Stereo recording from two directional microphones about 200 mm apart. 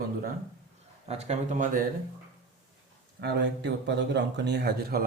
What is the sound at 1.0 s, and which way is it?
Speech, 35° right (ahead or behind).